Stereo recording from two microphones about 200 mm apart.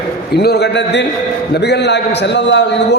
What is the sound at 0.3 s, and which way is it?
A man's voice, 55° left (ahead or behind).